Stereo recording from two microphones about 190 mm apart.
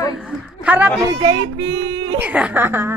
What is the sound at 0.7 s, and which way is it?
Speech, 10° right (ahead or behind).